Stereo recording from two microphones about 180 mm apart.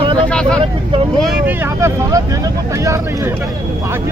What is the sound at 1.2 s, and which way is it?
Speech, 5° right (ahead or behind).